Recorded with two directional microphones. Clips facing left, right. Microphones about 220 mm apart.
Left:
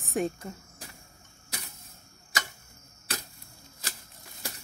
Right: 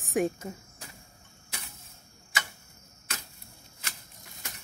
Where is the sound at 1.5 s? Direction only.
40° left (ahead or behind).